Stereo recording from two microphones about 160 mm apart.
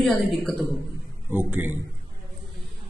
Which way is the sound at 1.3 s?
15° right (ahead or behind).